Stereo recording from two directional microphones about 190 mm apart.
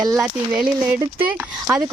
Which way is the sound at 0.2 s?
5° right (ahead or behind).